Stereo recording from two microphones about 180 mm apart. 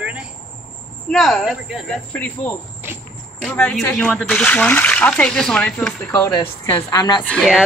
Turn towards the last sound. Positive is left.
turn(degrees=0)  # may be behind; listen again after turning